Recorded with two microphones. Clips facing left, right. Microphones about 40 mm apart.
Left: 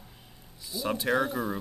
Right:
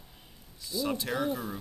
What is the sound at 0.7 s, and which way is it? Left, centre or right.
Speech, centre.